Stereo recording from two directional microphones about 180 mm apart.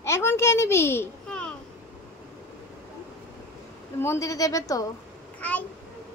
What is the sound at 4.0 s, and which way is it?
Speech, 15° left (ahead or behind).